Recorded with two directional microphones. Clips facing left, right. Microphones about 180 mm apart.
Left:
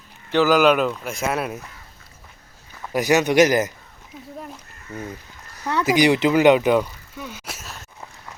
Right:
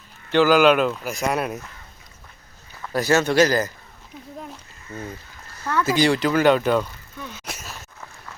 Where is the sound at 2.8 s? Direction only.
15° left (ahead or behind).